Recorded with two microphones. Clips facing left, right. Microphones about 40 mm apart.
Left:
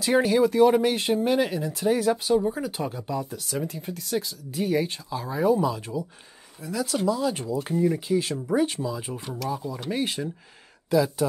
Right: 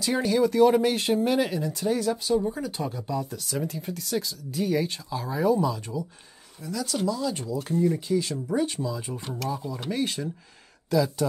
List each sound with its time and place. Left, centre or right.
0.0 s speech: centre